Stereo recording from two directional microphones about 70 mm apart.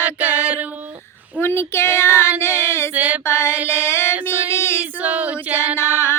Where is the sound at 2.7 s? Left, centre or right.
Left.